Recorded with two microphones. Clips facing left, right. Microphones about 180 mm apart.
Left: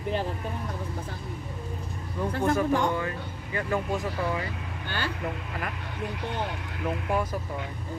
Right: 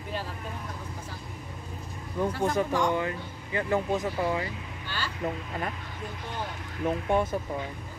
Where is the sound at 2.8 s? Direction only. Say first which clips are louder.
Right 1 dB; 20° right (ahead or behind).